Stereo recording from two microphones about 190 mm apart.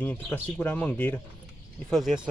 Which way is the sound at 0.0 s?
10° left (ahead or behind).